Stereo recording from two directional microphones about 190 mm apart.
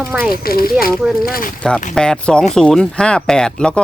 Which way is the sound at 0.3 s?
50° left (ahead or behind).